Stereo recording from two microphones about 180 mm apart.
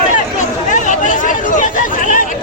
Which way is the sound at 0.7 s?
45° left (ahead or behind).